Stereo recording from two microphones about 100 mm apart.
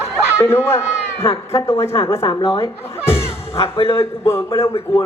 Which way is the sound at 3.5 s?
70° left (ahead or behind).